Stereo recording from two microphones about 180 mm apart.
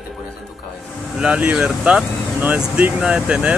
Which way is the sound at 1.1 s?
5° right (ahead or behind).